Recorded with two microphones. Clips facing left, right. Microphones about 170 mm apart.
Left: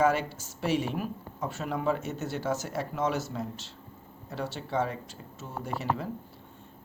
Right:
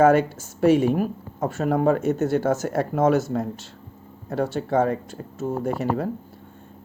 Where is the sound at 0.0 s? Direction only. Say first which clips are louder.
Right 9 dB; 50° right (ahead or behind).